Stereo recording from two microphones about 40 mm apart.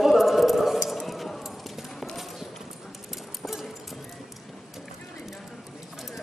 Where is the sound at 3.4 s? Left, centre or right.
Centre.